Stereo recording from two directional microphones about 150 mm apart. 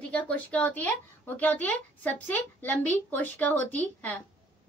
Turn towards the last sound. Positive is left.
turn(degrees=10)  # may be behind; listen again after turning